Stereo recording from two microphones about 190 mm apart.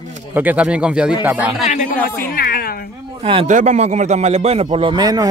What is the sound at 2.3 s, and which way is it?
Speech, 50° left (ahead or behind).